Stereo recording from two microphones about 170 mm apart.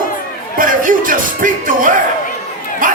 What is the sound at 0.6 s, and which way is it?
Music, 50° right (ahead or behind).